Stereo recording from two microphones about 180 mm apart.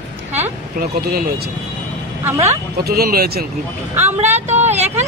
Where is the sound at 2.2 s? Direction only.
15° right (ahead or behind).